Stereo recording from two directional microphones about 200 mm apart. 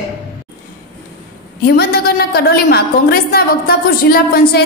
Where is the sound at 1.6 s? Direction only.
50° left (ahead or behind).